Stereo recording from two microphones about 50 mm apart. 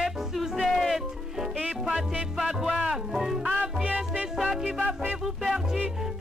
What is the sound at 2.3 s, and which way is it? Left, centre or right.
Music, centre.